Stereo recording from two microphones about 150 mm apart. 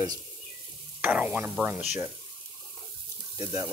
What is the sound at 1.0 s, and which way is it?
Speech, 10° right (ahead or behind).